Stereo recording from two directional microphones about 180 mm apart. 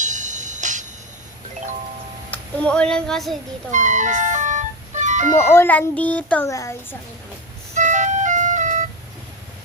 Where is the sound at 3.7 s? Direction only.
45° right (ahead or behind).